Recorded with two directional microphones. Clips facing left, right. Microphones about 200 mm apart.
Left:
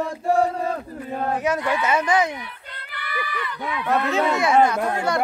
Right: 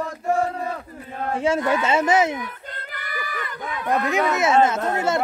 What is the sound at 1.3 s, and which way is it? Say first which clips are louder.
A child's voice: right 4 dB; 25° right (ahead or behind).